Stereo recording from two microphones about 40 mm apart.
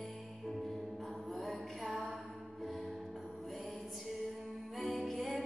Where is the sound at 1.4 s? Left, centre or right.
Centre.